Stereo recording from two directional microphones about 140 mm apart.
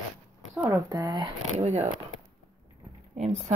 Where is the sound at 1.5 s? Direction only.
55° right (ahead or behind).